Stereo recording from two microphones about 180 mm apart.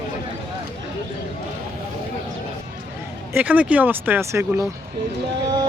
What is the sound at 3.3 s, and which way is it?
Speech, 10° right (ahead or behind).